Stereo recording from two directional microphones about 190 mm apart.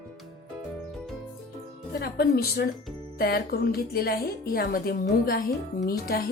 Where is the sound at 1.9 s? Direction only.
55° left (ahead or behind).